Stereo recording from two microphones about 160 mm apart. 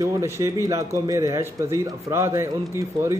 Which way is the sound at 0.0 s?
20° right (ahead or behind).